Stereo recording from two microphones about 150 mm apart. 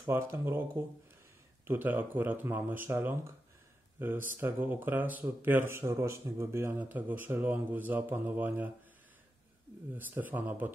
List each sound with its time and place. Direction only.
0.0 s speech: 15° right (ahead or behind)
9.9 s speech: 10° right (ahead or behind)